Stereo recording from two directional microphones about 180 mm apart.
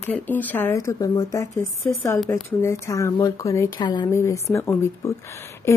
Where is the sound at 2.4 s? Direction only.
15° left (ahead or behind).